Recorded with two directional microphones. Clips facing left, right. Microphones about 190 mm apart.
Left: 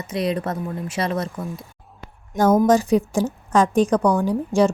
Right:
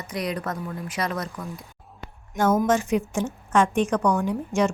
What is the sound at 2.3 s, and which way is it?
A woman's voice, 35° left (ahead or behind).